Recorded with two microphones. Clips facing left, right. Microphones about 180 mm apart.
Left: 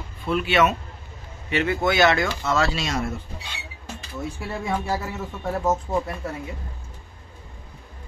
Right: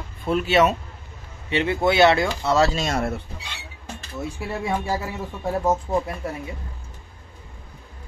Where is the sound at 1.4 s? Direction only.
25° right (ahead or behind); by 3.1 s 50° right (ahead or behind).